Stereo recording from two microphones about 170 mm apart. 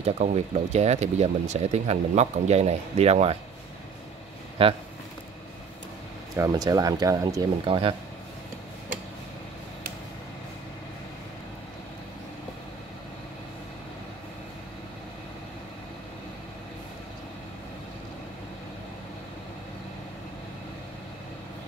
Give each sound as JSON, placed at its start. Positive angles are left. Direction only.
{"t": 0.0, "sound": "speech", "side_deg": -40}
{"t": 4.6, "sound": "speech", "side_deg": -35}
{"t": 6.3, "sound": "speech", "side_deg": -20}
{"t": 7.6, "sound": "speech", "side_deg": -30}